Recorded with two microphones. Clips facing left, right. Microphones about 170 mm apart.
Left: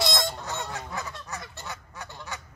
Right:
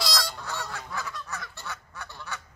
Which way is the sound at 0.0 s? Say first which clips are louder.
Left 4 dB; 20° left (ahead or behind).